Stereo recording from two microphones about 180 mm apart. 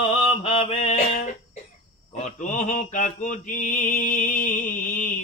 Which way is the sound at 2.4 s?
45° left (ahead or behind).